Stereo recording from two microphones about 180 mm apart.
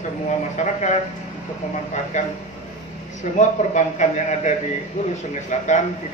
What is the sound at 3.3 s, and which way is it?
A man's voice, 40° left (ahead or behind).